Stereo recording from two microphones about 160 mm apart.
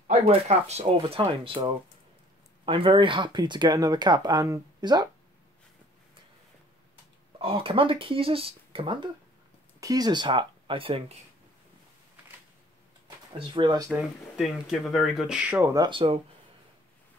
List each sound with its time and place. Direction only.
0.1 s speech: 40° right (ahead or behind); by 5.1 s 25° right (ahead or behind)
7.3 s speech: 35° right (ahead or behind)
9.8 s speech: 20° right (ahead or behind)
13.5 s speech: 30° right (ahead or behind)
13.9 s speech: centre (ahead or behind)
15.7 s speech: 30° right (ahead or behind)